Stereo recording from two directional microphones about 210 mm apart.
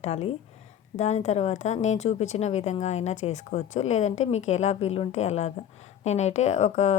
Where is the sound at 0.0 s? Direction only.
30° left (ahead or behind).